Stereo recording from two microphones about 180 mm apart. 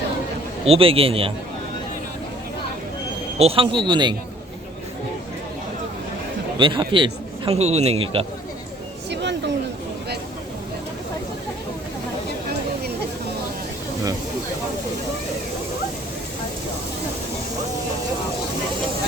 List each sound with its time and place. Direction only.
0.6 s a man's voice: 30° right (ahead or behind)
3.3 s speech: 30° right (ahead or behind)
6.6 s a man's voice: 25° right (ahead or behind)